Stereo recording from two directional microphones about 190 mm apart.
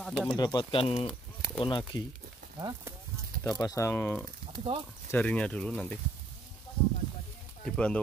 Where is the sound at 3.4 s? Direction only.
20° left (ahead or behind).